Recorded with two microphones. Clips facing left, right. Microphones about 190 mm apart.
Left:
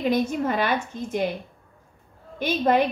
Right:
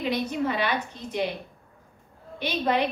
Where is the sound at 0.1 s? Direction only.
45° left (ahead or behind).